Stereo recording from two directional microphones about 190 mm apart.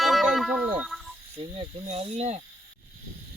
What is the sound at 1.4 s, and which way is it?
Speech, 30° right (ahead or behind).